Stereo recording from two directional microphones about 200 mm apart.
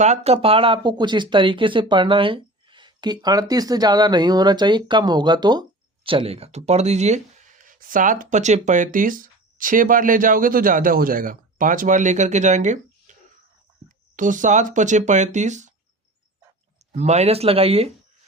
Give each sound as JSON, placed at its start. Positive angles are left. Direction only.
{"t": 0.0, "sound": "speech", "side_deg": -35}
{"t": 13.1, "sound": "cricket", "side_deg": -40}
{"t": 13.8, "sound": "speech", "side_deg": -40}
{"t": 16.9, "sound": "speech", "side_deg": -35}